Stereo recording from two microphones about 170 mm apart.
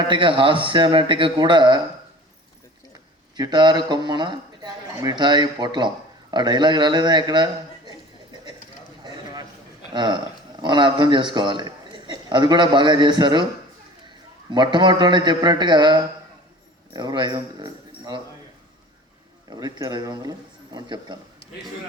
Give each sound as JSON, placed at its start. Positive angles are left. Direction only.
{"t": 0.1, "sound": "speech", "side_deg": -30}
{"t": 3.3, "sound": "speech", "side_deg": -25}
{"t": 9.9, "sound": "a man's voice", "side_deg": -25}
{"t": 14.5, "sound": "speech", "side_deg": -25}
{"t": 19.5, "sound": "speech", "side_deg": -25}